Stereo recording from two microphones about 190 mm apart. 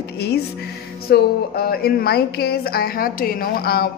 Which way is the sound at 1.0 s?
55° left (ahead or behind).